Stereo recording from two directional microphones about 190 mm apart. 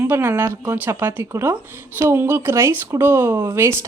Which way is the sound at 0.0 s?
10° right (ahead or behind).